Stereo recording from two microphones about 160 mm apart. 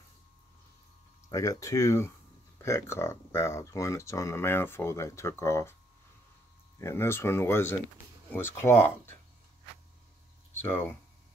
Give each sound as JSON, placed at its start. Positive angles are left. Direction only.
{"t": 1.3, "sound": "speech", "side_deg": 20}
{"t": 6.8, "sound": "speech", "side_deg": 15}
{"t": 10.5, "sound": "speech", "side_deg": 15}